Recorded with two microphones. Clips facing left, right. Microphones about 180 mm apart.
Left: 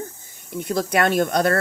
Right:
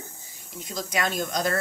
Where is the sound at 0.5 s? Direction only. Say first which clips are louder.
Left 9 dB; 60° left (ahead or behind).